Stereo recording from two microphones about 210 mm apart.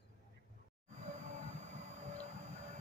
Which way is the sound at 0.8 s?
30° right (ahead or behind).